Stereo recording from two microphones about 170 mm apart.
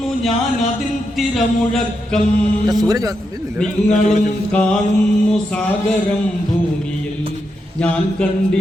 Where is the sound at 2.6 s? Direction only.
20° right (ahead or behind).